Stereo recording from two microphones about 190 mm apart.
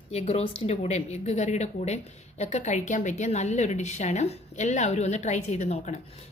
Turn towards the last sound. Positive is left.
turn(degrees=30)  # may be behind; listen again after turning